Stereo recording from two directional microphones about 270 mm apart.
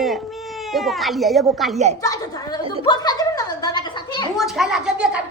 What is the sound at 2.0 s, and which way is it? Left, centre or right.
Speech, centre.